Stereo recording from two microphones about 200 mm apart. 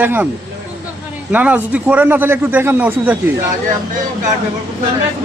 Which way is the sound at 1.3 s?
10° right (ahead or behind).